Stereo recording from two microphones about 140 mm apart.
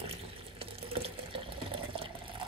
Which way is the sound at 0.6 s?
40° right (ahead or behind).